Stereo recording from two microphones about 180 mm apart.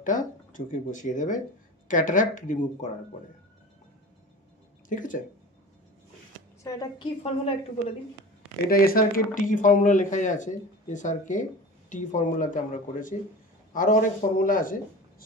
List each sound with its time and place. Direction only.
0.0 s speech: 45° left (ahead or behind)
4.8 s speech: 45° left (ahead or behind)
6.6 s a woman's voice: 20° left (ahead or behind)
8.6 s speech: 55° left (ahead or behind)